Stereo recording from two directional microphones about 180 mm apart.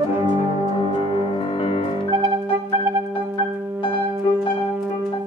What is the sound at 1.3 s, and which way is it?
Music, 30° left (ahead or behind).